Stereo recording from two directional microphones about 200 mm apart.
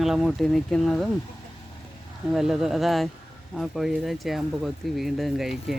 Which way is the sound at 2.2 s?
Centre (ahead or behind).